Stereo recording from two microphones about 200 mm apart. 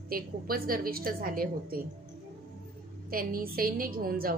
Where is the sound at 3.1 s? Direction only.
45° right (ahead or behind).